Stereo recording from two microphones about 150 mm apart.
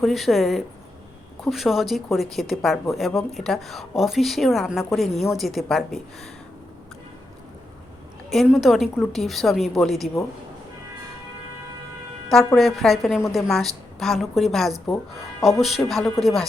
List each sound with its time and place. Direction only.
0.0 s speech: centre (ahead or behind)
8.3 s speech: centre (ahead or behind)
12.5 s speech: centre (ahead or behind)